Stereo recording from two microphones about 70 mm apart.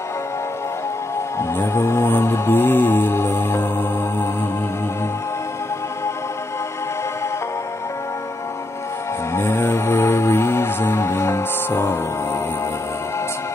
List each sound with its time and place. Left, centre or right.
1.4 s music: left
9.3 s music: left